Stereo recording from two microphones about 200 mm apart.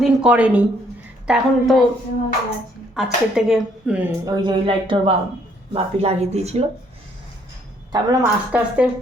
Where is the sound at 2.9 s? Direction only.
5° right (ahead or behind).